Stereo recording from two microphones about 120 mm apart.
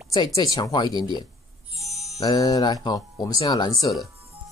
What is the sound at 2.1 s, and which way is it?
Speech, 30° left (ahead or behind).